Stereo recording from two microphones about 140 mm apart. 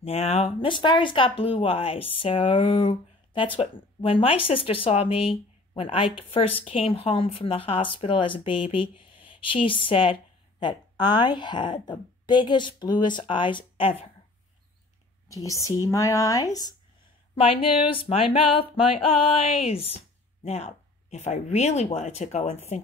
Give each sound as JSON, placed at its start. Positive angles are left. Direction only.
{"t": 0.0, "sound": "speech", "side_deg": 45}
{"t": 15.2, "sound": "speech", "side_deg": 25}
{"t": 17.4, "sound": "speech", "side_deg": 40}